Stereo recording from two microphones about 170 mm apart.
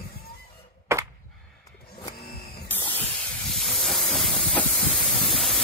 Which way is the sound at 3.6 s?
Centre (ahead or behind).